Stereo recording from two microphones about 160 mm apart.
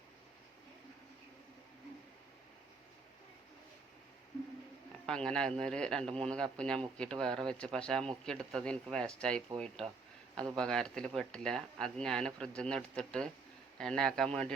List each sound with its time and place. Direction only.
5.0 s a man's voice: 5° left (ahead or behind)